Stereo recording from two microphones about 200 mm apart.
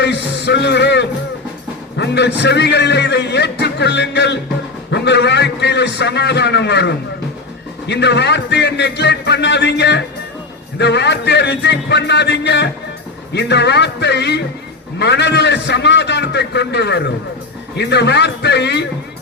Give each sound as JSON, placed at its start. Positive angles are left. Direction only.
{"t": 0.0, "sound": "a man's voice", "side_deg": 60}